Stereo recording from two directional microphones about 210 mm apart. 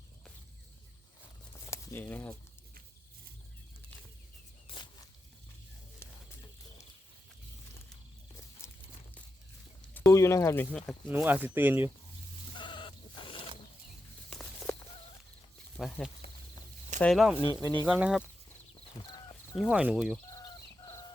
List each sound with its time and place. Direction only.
1.7 s speech: 10° left (ahead or behind)
4.7 s a sound: 25° left (ahead or behind)
8.6 s horse: 10° left (ahead or behind)
9.9 s speech: 15° left (ahead or behind)
11.1 s speech: 10° right (ahead or behind)
12.5 s chicken: 20° left (ahead or behind)
15.8 s speech: centre (ahead or behind)
17.3 s speech: 20° left (ahead or behind)
17.8 s speech: centre (ahead or behind)
19.5 s speech: centre (ahead or behind)
20.3 s fowl: 15° left (ahead or behind)